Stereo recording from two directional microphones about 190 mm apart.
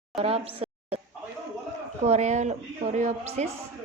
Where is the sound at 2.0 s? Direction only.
40° right (ahead or behind).